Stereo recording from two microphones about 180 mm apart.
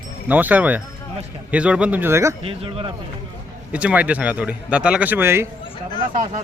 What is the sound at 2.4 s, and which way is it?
Speech, 30° right (ahead or behind).